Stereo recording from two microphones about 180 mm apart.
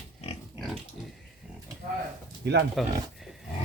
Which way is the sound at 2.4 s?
70° right (ahead or behind).